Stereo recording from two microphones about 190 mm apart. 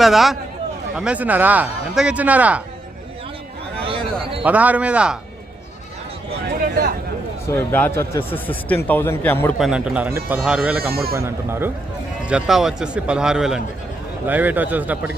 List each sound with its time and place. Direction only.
0.0 s a man's voice: centre (ahead or behind)
3.8 s a sound: 30° right (ahead or behind)
4.4 s speech: 10° right (ahead or behind)
7.4 s a man's voice: 10° left (ahead or behind)
9.6 s a man's voice: centre (ahead or behind)
12.3 s a man's voice: centre (ahead or behind)